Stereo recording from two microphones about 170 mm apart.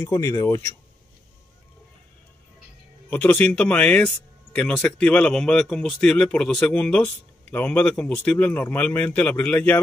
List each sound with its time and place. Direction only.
0.0 s speech: 20° left (ahead or behind)
3.1 s speech: 10° left (ahead or behind)